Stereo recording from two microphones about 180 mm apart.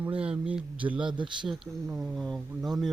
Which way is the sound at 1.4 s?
Centre (ahead or behind).